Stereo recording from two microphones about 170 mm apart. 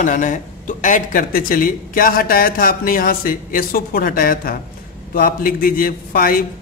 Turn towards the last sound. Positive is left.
turn(degrees=55)  # may be behind; listen again after turning